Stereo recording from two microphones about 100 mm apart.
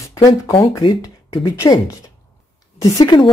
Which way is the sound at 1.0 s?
35° left (ahead or behind).